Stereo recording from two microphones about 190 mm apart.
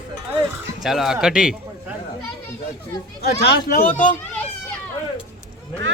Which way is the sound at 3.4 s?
55° left (ahead or behind).